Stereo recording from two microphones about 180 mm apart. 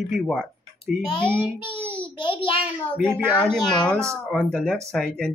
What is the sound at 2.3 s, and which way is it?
Speech, 30° left (ahead or behind).